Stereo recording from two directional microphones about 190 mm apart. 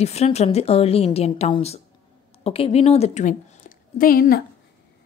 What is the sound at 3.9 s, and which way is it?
Speech, 50° left (ahead or behind).